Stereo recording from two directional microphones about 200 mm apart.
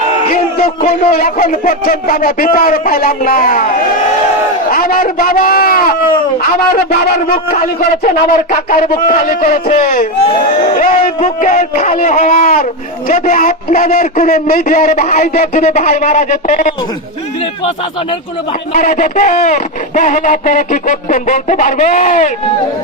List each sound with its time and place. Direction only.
0.3 s a man's voice: 50° left (ahead or behind)
4.7 s a man's voice: 45° left (ahead or behind)
18.7 s a man's voice: 40° left (ahead or behind)